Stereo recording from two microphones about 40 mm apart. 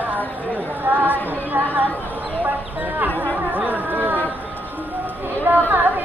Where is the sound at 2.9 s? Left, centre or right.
Right.